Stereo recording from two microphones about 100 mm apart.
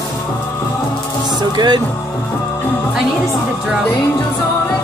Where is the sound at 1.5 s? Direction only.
45° right (ahead or behind).